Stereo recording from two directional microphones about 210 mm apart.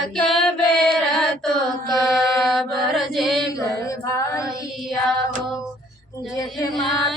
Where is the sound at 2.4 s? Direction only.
Centre (ahead or behind).